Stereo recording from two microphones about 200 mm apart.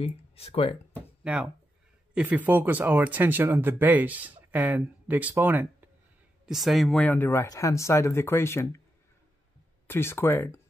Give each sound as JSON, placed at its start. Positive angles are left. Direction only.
{"t": 0.0, "sound": "speech", "side_deg": 30}
{"t": 1.2, "sound": "speech", "side_deg": -5}
{"t": 9.8, "sound": "speech", "side_deg": 10}